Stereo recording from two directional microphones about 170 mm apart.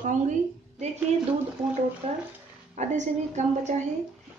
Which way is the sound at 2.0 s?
35° right (ahead or behind).